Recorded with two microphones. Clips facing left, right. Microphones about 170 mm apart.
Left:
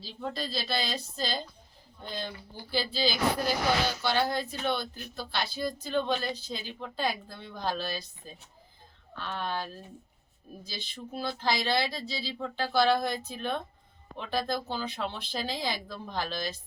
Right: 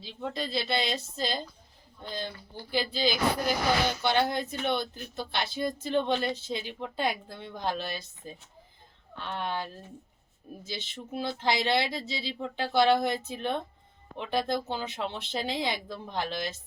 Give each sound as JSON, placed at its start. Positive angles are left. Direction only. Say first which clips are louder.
{"t": 0.2, "sound": "speech", "louder": "right 2 dB", "side_deg": -20}
{"t": 2.7, "sound": "speech", "louder": "right 1 dB", "side_deg": -15}